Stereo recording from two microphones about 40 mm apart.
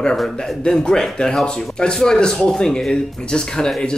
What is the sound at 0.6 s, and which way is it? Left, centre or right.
Speech, centre.